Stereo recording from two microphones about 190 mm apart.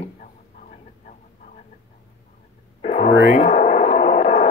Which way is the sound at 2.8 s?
35° left (ahead or behind).